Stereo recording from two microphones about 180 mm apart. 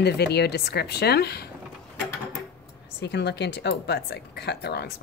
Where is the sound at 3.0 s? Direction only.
65° left (ahead or behind).